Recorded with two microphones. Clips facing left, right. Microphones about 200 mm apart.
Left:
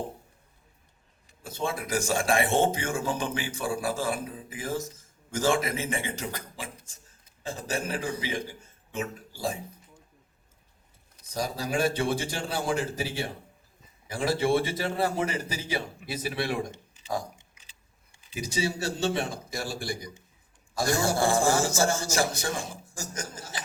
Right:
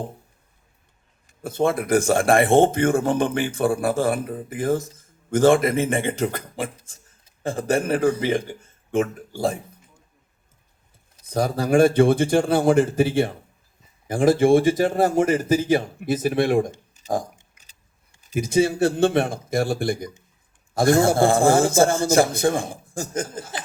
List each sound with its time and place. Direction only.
1.3 s speech: 55° right (ahead or behind)
11.3 s a man's voice: 55° right (ahead or behind)
16.9 s a sound: 45° right (ahead or behind)
18.2 s speech: 50° right (ahead or behind)